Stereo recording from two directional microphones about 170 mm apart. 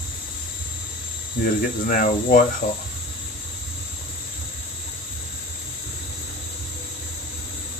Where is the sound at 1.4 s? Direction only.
55° left (ahead or behind).